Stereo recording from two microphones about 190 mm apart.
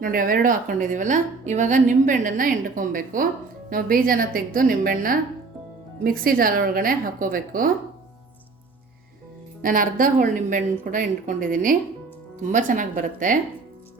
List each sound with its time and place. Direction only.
0.0 s a woman's voice: 45° right (ahead or behind)
9.6 s a woman's voice: 45° right (ahead or behind)